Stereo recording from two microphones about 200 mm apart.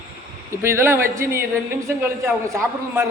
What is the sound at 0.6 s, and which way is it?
Speech, 10° right (ahead or behind).